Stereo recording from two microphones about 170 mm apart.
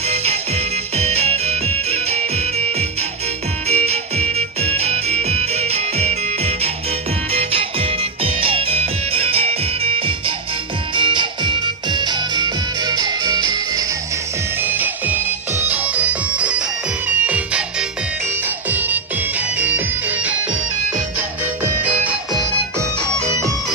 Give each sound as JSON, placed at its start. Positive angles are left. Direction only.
{"t": 0.1, "sound": "music", "side_deg": -35}
{"t": 8.2, "sound": "music", "side_deg": -35}
{"t": 14.6, "sound": "music", "side_deg": -10}
{"t": 21.8, "sound": "music", "side_deg": -10}